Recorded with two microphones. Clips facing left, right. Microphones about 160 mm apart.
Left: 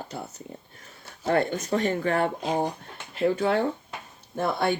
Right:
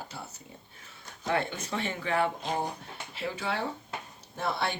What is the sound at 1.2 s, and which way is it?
Speech, 45° left (ahead or behind).